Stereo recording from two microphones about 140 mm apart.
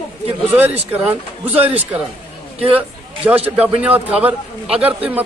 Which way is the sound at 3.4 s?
10° right (ahead or behind).